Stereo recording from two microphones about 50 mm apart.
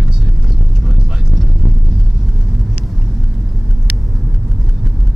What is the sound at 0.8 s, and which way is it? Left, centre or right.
Vehicle, centre.